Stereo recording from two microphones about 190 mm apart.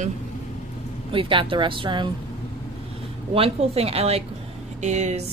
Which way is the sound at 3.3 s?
30° right (ahead or behind).